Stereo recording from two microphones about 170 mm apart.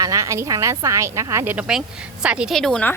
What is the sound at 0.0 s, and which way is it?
A woman's voice, 20° right (ahead or behind).